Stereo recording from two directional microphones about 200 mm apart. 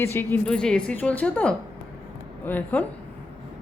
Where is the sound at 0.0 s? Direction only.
10° left (ahead or behind).